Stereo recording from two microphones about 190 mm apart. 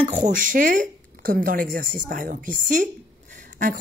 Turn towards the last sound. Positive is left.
turn(degrees=-40)  # may be behind; listen again after turning